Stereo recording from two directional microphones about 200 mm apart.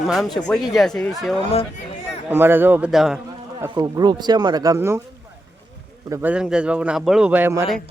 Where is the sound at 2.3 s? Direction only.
10° right (ahead or behind).